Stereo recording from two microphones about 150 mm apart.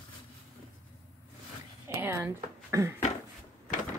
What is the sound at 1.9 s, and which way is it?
Speech, 15° right (ahead or behind).